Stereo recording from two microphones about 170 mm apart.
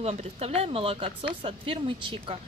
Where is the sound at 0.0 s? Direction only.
35° right (ahead or behind).